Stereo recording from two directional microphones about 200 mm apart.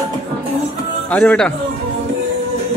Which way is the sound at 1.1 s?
5° left (ahead or behind).